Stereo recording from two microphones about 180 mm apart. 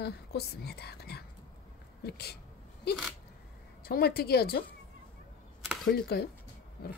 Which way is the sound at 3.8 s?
60° left (ahead or behind).